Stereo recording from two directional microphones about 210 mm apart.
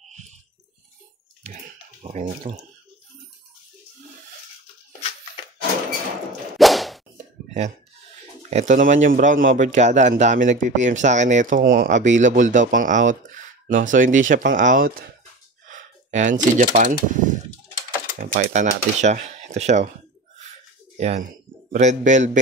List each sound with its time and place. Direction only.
0.1 s a sound: 30° right (ahead or behind)
2.0 s speech: 35° right (ahead or behind)
6.6 s whip: centre (ahead or behind)
8.4 s speech: 35° right (ahead or behind)
21.0 s speech: 30° right (ahead or behind)